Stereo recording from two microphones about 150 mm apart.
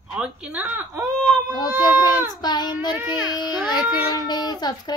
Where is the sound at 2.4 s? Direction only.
30° left (ahead or behind).